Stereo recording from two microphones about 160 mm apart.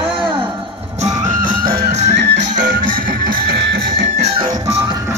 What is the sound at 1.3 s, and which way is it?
Music, 55° right (ahead or behind).